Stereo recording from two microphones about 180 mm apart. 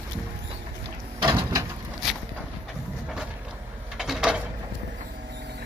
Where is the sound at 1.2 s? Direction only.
25° right (ahead or behind).